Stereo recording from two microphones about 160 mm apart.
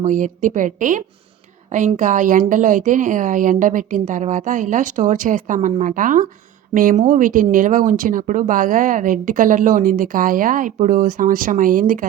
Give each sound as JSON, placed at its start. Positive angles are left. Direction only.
{"t": 0.0, "sound": "a woman's voice", "side_deg": -50}